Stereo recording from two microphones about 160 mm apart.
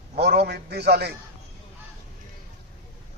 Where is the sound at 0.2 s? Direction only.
90° right.